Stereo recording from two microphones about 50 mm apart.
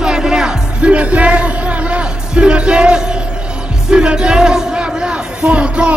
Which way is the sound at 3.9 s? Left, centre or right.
Centre.